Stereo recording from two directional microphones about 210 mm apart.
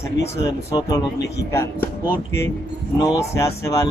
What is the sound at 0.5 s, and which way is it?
Speech, 15° left (ahead or behind).